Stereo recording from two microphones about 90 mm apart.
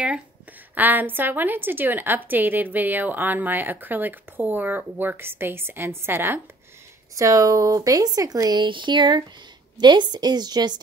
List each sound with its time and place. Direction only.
0.7 s a woman's voice: 20° right (ahead or behind)
7.2 s speech: 35° right (ahead or behind)